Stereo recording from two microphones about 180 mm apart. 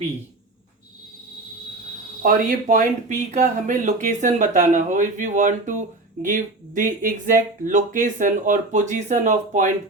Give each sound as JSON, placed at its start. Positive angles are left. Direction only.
{"t": 2.2, "sound": "speech", "side_deg": -50}